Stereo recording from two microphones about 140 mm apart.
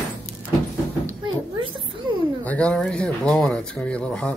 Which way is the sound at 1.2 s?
35° right (ahead or behind).